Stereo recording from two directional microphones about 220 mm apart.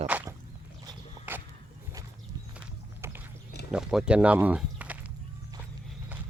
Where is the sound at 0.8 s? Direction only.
10° right (ahead or behind).